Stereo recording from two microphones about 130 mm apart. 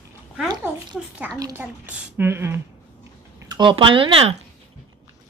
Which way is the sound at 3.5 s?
35° right (ahead or behind).